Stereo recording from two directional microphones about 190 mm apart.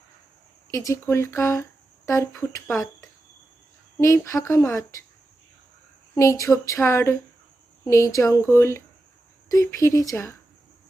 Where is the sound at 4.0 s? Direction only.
15° left (ahead or behind).